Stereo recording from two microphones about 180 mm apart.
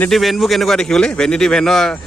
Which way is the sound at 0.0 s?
Centre (ahead or behind).